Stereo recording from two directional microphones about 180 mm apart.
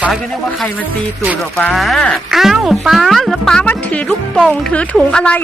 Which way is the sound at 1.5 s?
5° left (ahead or behind).